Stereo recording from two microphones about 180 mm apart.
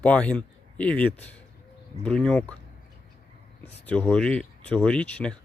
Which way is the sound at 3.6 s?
5° left (ahead or behind).